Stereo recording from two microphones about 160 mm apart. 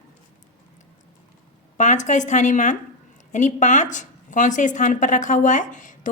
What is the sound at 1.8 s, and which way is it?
A woman's voice, 50° left (ahead or behind).